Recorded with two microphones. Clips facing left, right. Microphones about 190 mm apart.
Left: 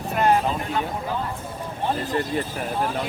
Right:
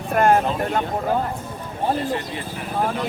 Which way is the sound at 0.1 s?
50° right (ahead or behind).